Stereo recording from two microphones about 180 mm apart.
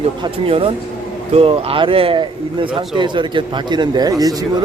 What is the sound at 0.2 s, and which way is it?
A man's voice, 30° right (ahead or behind).